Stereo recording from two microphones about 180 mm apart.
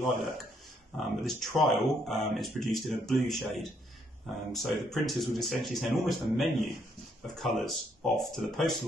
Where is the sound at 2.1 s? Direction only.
Centre (ahead or behind).